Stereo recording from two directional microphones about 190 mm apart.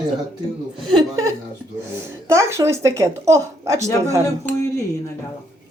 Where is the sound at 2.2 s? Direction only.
15° right (ahead or behind).